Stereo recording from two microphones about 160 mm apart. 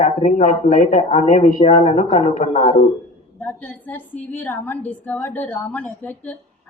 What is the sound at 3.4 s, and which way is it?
A woman's voice, 10° left (ahead or behind).